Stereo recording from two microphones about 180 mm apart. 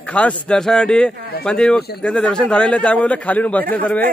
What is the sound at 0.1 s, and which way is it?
A man's voice, 5° left (ahead or behind).